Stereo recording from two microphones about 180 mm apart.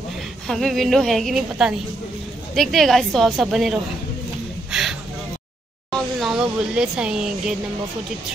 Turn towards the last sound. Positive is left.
turn(degrees=-5)  # may be behind; listen again after turning